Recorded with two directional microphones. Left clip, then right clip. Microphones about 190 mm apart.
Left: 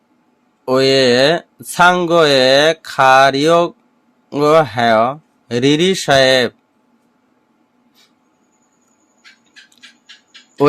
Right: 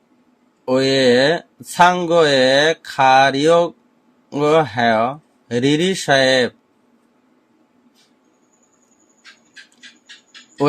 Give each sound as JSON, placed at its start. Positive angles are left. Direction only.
{"t": 0.6, "sound": "speech", "side_deg": 25}